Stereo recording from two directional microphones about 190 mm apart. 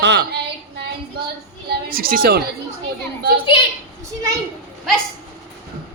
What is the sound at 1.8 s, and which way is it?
Speech, 50° right (ahead or behind).